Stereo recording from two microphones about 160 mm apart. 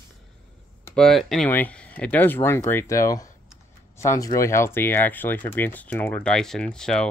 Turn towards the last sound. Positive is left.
turn(degrees=5)  # may be behind; listen again after turning